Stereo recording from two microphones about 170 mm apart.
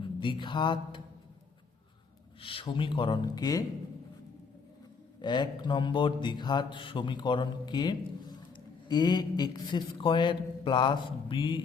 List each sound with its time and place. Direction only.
0.0 s mantra: 30° left (ahead or behind)
2.4 s speech: 30° left (ahead or behind)
5.2 s speech: 25° left (ahead or behind)